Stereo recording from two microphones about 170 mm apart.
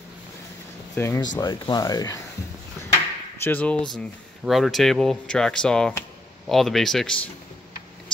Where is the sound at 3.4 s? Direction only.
10° left (ahead or behind).